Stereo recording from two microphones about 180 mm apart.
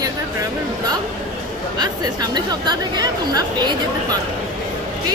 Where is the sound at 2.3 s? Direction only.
25° right (ahead or behind).